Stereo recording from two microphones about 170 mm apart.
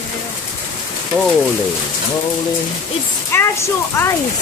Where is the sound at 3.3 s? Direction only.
15° left (ahead or behind).